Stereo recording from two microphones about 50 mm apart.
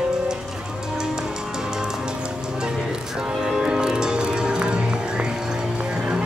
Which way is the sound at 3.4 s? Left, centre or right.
Centre.